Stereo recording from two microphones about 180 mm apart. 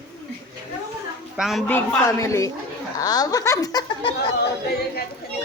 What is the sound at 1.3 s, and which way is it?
Speech, centre (ahead or behind).